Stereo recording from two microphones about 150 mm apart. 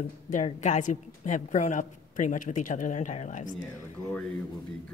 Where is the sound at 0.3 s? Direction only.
50° left (ahead or behind).